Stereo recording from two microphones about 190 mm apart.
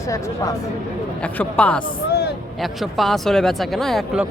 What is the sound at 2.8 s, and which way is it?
Speech, centre (ahead or behind).